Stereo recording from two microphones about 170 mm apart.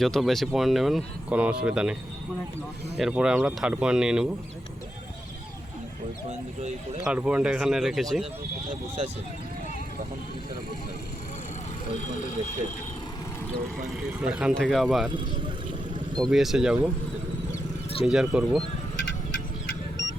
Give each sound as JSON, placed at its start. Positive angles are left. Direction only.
{"t": 0.0, "sound": "speech", "side_deg": 0}
{"t": 3.0, "sound": "speech", "side_deg": -5}
{"t": 7.0, "sound": "speech", "side_deg": -5}
{"t": 12.0, "sound": "speech", "side_deg": 45}
{"t": 13.8, "sound": "speech", "side_deg": -5}
{"t": 16.1, "sound": "speech", "side_deg": 0}
{"t": 18.0, "sound": "speech", "side_deg": -5}